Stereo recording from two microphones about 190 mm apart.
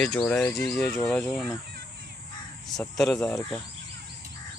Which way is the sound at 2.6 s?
Centre (ahead or behind).